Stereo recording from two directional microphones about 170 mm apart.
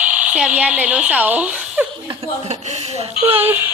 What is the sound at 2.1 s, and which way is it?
Speech, 40° right (ahead or behind).